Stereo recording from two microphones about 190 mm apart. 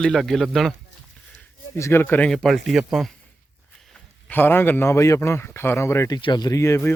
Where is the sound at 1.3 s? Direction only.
10° left (ahead or behind).